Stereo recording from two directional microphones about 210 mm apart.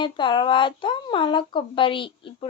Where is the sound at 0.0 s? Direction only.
20° left (ahead or behind).